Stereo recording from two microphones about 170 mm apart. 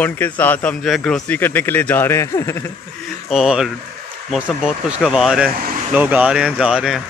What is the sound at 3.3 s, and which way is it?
Speech, 5° right (ahead or behind).